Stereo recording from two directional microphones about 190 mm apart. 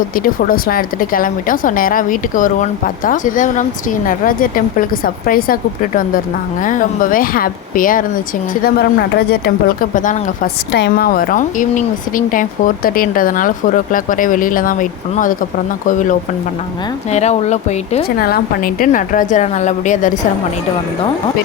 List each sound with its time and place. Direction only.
0.2 s a woman's voice: 50° left (ahead or behind)
8.6 s speech: 55° left (ahead or behind)
9.9 s a woman's voice: 45° left (ahead or behind)
10.7 s a woman's voice: 60° left (ahead or behind); by 18.0 s 35° left (ahead or behind)
18.2 s a woman's voice: 50° left (ahead or behind)